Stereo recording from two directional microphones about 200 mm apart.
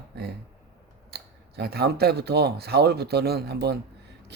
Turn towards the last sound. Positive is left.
turn(degrees=-55)  # may be behind; listen again after turning